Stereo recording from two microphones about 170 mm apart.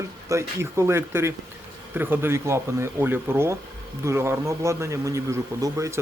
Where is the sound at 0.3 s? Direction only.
15° right (ahead or behind).